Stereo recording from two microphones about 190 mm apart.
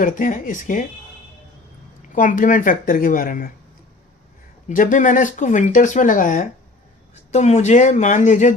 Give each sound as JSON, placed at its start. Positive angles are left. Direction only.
{"t": 0.0, "sound": "speech", "side_deg": 45}
{"t": 2.1, "sound": "speech", "side_deg": 45}
{"t": 4.7, "sound": "speech", "side_deg": 45}